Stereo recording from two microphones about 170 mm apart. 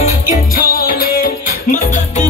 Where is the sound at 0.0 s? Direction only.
55° left (ahead or behind).